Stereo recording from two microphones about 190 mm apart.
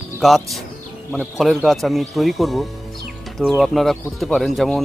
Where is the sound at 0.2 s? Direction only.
Centre (ahead or behind).